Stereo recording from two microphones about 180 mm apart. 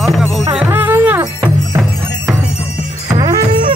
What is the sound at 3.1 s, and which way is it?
Music, 25° right (ahead or behind).